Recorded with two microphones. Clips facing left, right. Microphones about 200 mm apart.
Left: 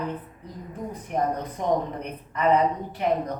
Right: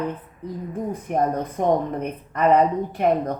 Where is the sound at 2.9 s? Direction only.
50° right (ahead or behind).